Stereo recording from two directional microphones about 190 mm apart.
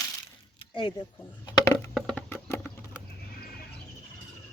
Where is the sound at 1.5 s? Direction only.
15° left (ahead or behind).